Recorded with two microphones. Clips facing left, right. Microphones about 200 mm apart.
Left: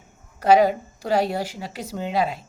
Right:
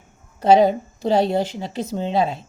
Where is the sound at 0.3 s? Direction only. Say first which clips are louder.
Right 2 dB; 25° right (ahead or behind).